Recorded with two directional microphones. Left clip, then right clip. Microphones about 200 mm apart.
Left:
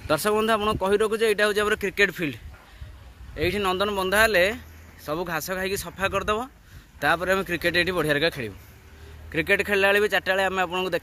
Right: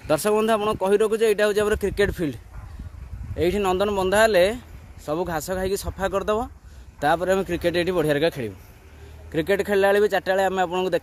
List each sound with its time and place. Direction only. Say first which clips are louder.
0.1 s speech: right 2 dB; 30° right (ahead or behind)